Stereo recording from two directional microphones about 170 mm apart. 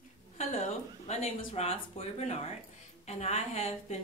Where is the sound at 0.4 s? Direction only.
40° left (ahead or behind).